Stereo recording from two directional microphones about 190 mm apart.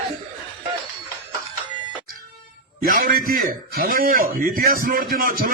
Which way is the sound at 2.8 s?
50° right (ahead or behind).